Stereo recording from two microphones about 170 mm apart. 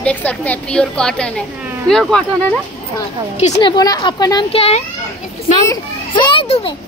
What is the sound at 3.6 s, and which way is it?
Speech, 20° left (ahead or behind).